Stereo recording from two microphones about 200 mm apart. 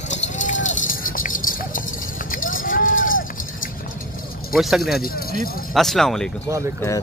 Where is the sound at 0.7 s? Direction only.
45° left (ahead or behind).